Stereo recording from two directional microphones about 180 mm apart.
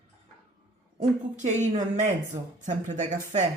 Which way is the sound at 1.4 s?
40° right (ahead or behind).